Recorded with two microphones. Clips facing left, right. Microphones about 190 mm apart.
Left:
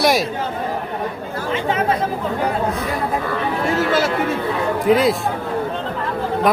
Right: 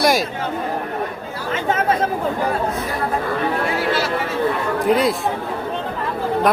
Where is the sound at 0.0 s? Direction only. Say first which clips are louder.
Even; centre (ahead or behind).